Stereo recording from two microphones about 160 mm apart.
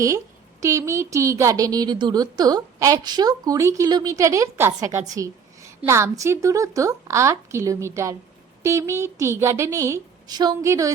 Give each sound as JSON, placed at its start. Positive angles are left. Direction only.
{"t": 0.6, "sound": "speech", "side_deg": -20}